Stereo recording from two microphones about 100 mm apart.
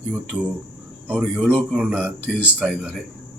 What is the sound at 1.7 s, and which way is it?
Speech, 15° right (ahead or behind).